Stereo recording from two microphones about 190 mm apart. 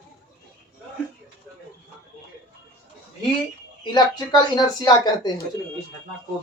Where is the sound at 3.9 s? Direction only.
20° left (ahead or behind).